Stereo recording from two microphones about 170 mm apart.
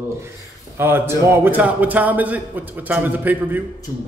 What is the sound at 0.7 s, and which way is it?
A man's voice, 15° right (ahead or behind).